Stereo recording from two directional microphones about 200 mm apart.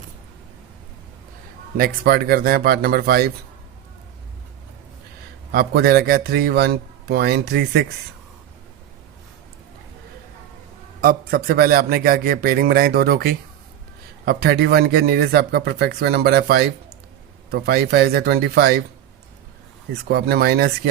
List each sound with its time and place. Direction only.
1.8 s speech: 50° right (ahead or behind)
5.5 s speech: 50° right (ahead or behind)
11.0 s speech: 50° right (ahead or behind)
19.9 s speech: 50° right (ahead or behind)